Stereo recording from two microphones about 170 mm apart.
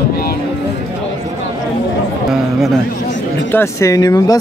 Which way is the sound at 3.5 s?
15° left (ahead or behind).